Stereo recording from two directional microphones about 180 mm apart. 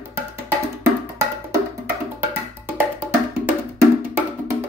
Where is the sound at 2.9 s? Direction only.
10° right (ahead or behind).